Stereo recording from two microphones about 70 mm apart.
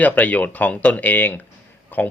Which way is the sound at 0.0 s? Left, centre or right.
Left.